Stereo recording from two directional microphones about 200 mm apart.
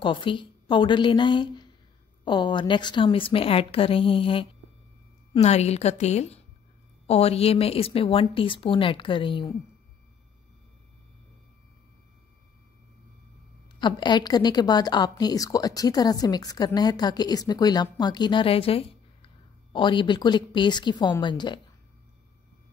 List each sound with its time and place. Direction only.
0.0 s a woman's voice: 25° left (ahead or behind)
13.7 s a woman's voice: 20° left (ahead or behind)